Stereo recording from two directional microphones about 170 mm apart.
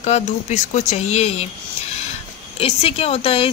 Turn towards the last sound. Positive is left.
turn(degrees=35)  # may be behind; listen again after turning